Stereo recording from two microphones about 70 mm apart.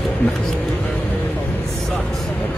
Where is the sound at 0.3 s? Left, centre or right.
Centre.